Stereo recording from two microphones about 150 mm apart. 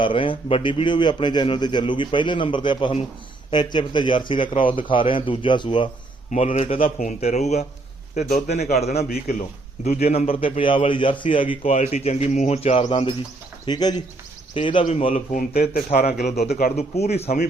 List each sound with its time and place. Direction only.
0.0 s a man's voice: 35° left (ahead or behind)
6.3 s a man's voice: 50° left (ahead or behind)
7.0 s a man's voice: 50° left (ahead or behind)
13.7 s a man's voice: 30° left (ahead or behind)
14.8 s a man's voice: 45° left (ahead or behind)
16.7 s a man's voice: 45° left (ahead or behind)